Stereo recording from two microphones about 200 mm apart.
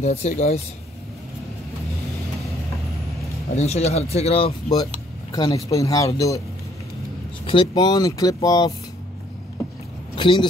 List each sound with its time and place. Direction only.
0.0 s speech: 35° left (ahead or behind)
3.5 s speech: 30° left (ahead or behind); by 6.4 s 15° left (ahead or behind)
7.4 s speech: 25° left (ahead or behind)
10.1 s speech: 25° left (ahead or behind)